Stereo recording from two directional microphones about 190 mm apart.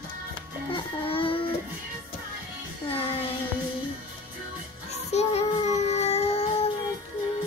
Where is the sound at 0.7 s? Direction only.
30° left (ahead or behind).